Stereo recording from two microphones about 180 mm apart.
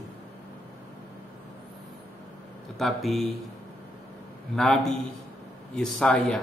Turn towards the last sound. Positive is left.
turn(degrees=5)  # may be behind; listen again after turning